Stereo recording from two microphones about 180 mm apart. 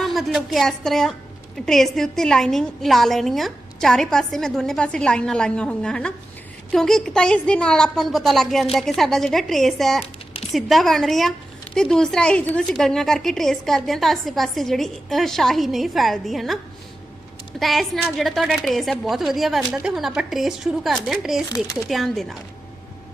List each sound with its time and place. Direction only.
0.0 s a woman's voice: centre (ahead or behind)
17.6 s a woman's voice: centre (ahead or behind)
21.5 s speech: 15° left (ahead or behind)
21.8 s a woman's voice: centre (ahead or behind)